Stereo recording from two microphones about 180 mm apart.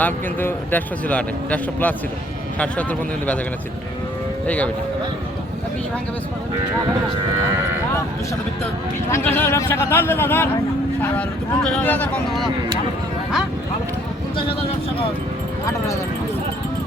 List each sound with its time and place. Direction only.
0.0 s speech: 10° left (ahead or behind)
4.4 s speech: 5° left (ahead or behind)
9.0 s speech: 15° left (ahead or behind)